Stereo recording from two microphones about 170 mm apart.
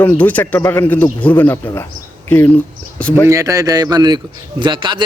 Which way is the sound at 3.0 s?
5° left (ahead or behind).